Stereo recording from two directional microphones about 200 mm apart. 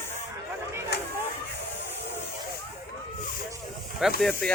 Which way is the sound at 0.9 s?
55° left (ahead or behind).